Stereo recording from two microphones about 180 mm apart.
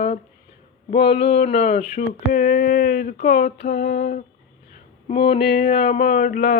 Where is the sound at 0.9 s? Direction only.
35° left (ahead or behind).